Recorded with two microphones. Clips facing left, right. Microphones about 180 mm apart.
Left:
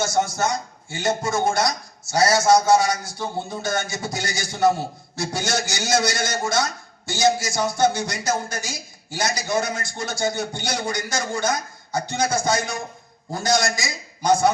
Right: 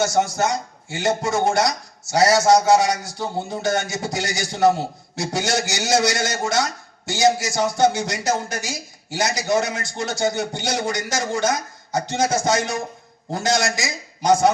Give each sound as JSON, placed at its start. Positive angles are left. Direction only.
{"t": 0.0, "sound": "a man's voice", "side_deg": -20}